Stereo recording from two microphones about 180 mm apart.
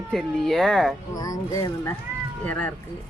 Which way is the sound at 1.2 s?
20° left (ahead or behind).